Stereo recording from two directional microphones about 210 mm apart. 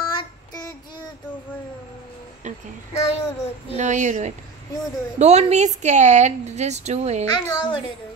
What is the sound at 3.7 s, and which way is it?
A woman's voice, 35° right (ahead or behind).